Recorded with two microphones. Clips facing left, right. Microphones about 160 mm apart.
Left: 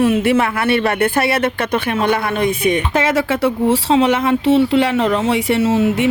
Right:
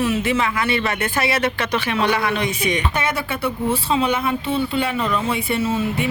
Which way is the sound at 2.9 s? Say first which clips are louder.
Left 7 dB; 90° left.